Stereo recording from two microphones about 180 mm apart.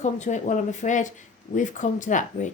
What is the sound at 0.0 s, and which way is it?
A woman's voice, 40° left (ahead or behind).